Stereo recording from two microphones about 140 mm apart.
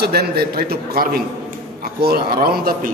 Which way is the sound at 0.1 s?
90° right.